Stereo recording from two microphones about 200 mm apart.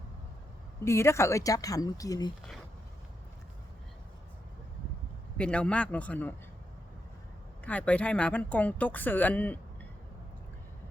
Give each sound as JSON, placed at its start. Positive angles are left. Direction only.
{"t": 0.9, "sound": "a woman's voice", "side_deg": 15}
{"t": 5.4, "sound": "a woman's voice", "side_deg": 5}
{"t": 7.6, "sound": "a woman's voice", "side_deg": 5}